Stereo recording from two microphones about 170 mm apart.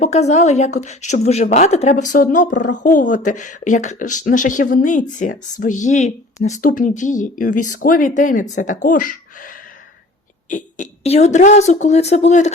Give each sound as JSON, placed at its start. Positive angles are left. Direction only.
{"t": 0.0, "sound": "a woman's voice", "side_deg": 40}